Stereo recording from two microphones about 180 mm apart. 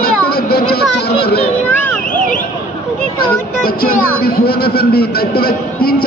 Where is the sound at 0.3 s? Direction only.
60° left (ahead or behind).